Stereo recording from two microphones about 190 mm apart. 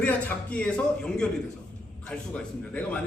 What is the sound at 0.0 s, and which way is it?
A man's voice, 10° left (ahead or behind).